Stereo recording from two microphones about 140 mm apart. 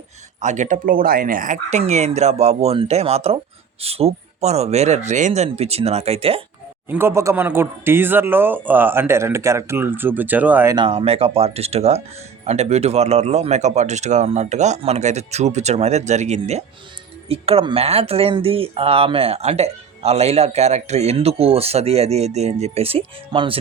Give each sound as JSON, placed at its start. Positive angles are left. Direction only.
{"t": 0.4, "sound": "speech", "side_deg": -60}
{"t": 1.8, "sound": "speech", "side_deg": -50}
{"t": 6.8, "sound": "a man's voice", "side_deg": -15}
{"t": 10.8, "sound": "speech", "side_deg": -40}